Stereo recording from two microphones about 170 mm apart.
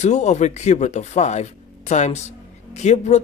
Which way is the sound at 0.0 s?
40° left (ahead or behind).